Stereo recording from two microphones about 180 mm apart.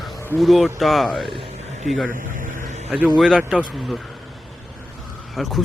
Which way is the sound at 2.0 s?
50° right (ahead or behind).